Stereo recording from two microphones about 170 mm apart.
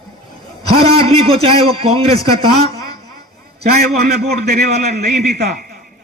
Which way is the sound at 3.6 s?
70° right (ahead or behind).